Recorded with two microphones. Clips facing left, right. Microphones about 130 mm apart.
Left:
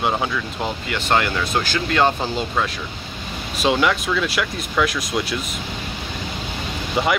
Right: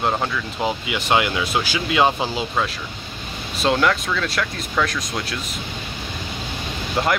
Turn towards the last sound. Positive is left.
turn(degrees=0)  # may be behind; listen again after turning